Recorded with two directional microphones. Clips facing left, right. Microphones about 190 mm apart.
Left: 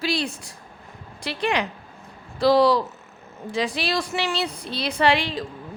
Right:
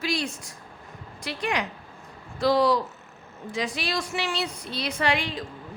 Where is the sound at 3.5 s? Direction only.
30° left (ahead or behind).